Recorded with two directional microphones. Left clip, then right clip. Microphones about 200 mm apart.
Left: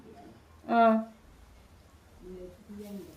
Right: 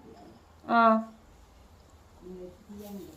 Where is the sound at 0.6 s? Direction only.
5° left (ahead or behind).